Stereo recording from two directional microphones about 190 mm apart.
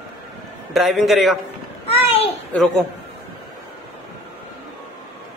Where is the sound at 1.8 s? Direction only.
30° left (ahead or behind).